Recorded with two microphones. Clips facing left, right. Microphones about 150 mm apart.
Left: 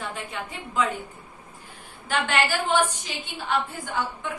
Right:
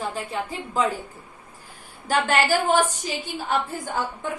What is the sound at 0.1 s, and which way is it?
Speech, 35° right (ahead or behind).